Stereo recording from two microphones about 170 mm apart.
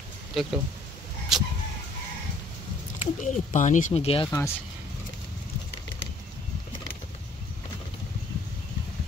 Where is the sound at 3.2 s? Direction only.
45° left (ahead or behind).